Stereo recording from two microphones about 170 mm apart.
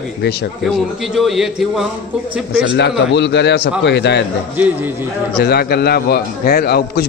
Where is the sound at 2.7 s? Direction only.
90° left.